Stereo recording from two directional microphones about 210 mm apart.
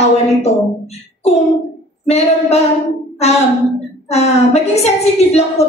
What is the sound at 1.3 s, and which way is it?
A woman's voice, 30° left (ahead or behind).